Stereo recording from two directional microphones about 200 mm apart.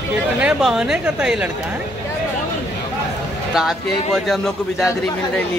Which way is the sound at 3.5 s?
Centre (ahead or behind).